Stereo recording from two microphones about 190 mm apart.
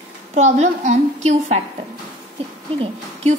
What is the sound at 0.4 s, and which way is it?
A woman's voice, 35° right (ahead or behind).